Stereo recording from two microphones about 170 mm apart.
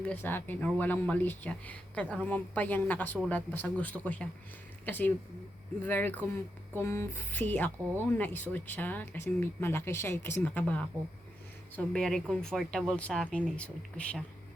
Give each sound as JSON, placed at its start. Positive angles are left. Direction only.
{"t": 0.0, "sound": "speech", "side_deg": 10}